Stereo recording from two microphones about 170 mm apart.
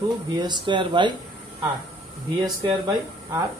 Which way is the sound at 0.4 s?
25° right (ahead or behind).